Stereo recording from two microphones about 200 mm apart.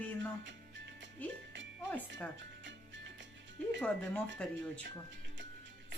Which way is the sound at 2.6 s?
65° right (ahead or behind).